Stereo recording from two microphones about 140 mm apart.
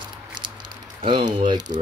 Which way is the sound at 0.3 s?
35° right (ahead or behind).